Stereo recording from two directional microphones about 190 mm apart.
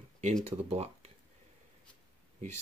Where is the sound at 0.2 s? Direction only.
40° right (ahead or behind).